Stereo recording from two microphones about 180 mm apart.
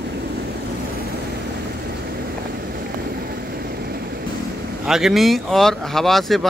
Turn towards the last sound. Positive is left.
turn(degrees=0)  # may be behind; listen again after turning